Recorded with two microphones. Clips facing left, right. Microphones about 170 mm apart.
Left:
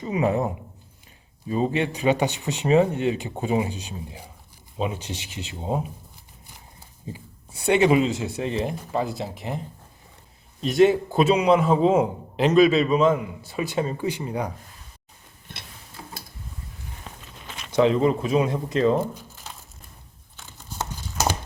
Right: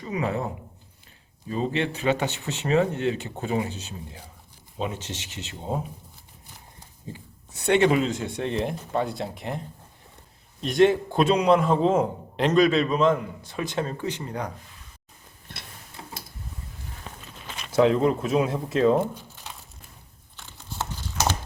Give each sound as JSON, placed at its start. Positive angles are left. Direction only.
{"t": 0.0, "sound": "a man's voice", "side_deg": 20}
{"t": 7.1, "sound": "speech", "side_deg": 10}
{"t": 10.6, "sound": "a man's voice", "side_deg": 0}
{"t": 17.7, "sound": "speech", "side_deg": 0}